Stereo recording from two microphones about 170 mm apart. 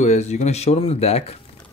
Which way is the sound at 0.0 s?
40° left (ahead or behind).